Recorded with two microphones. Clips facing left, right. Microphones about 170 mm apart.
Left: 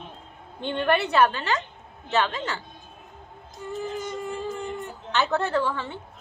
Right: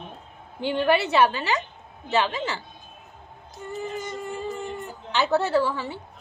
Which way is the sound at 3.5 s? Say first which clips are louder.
Left 1 dB; centre (ahead or behind).